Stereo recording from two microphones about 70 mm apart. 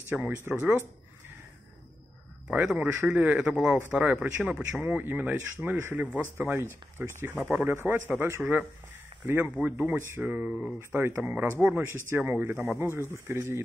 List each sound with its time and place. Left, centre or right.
0.1 s speech: centre
2.5 s a man's voice: centre; by 13.6 s right